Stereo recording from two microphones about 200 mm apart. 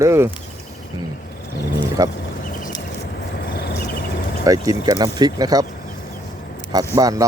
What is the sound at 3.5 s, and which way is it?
Cricket, 55° left (ahead or behind).